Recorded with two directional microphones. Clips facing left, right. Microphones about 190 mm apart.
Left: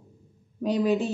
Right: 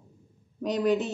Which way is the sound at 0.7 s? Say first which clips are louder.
Left 1 dB; 10° left (ahead or behind).